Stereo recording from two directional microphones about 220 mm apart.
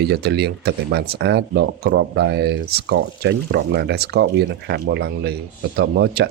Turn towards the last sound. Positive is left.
turn(degrees=-50)  # may be behind; listen again after turning